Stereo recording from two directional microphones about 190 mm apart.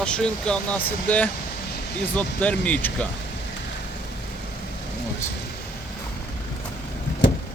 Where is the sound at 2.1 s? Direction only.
5° left (ahead or behind).